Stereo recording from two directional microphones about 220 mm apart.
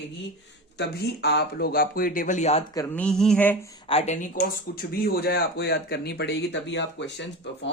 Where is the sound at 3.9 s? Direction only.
30° left (ahead or behind); by 7.6 s 55° left (ahead or behind).